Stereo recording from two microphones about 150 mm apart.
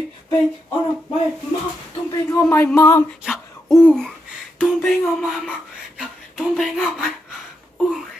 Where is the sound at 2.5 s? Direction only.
15° left (ahead or behind).